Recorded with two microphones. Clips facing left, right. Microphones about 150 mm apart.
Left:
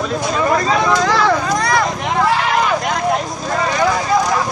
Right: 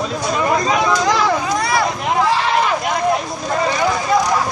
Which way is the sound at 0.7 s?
15° right (ahead or behind).